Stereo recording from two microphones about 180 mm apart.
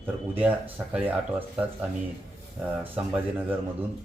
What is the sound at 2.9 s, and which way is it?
Speech, 10° right (ahead or behind).